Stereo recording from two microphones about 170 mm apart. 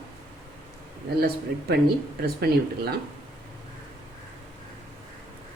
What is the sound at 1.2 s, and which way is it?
Speech, 65° right (ahead or behind).